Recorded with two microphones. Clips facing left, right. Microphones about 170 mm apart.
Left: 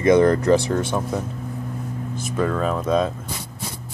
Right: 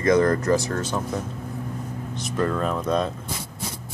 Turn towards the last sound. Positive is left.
turn(degrees=5)  # may be behind; listen again after turning